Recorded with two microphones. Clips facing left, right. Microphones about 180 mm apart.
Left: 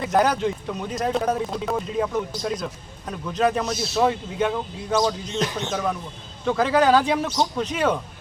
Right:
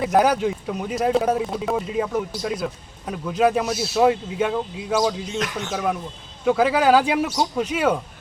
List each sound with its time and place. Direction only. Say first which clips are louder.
0.0 s speech: right 2 dB; 10° right (ahead or behind)
5.4 s speech: left 4 dB; 30° left (ahead or behind)
5.7 s speech: right 1 dB; 10° right (ahead or behind)